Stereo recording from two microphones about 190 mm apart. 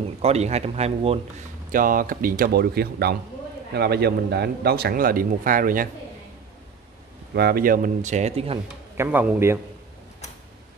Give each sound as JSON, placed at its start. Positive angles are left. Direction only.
{"t": 0.2, "sound": "speech", "side_deg": -35}
{"t": 1.7, "sound": "a man's voice", "side_deg": -45}
{"t": 7.3, "sound": "speech", "side_deg": -55}
{"t": 8.9, "sound": "speech", "side_deg": -10}